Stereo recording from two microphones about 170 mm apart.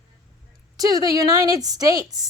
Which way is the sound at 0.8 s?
20° right (ahead or behind).